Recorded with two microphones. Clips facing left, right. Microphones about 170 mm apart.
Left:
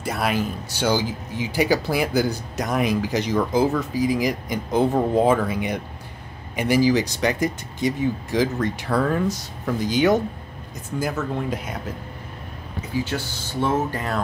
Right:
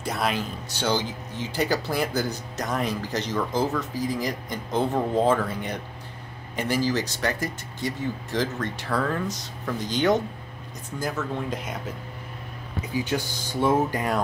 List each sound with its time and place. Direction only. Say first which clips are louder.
0.0 s speech: left 3 dB; 5° left (ahead or behind)
12.9 s speech: left 1 dB; 15° right (ahead or behind)